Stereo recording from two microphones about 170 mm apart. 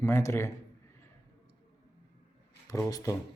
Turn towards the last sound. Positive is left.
turn(degrees=20)  # may be behind; listen again after turning